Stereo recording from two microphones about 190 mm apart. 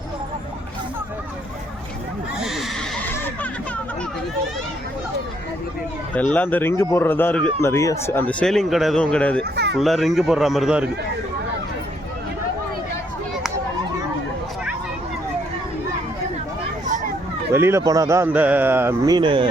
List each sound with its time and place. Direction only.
2.4 s neigh: centre (ahead or behind)
6.3 s speech: 10° left (ahead or behind)
9.4 s speech: 60° right (ahead or behind)
9.7 s speech: centre (ahead or behind)
17.5 s a man's voice: 15° right (ahead or behind)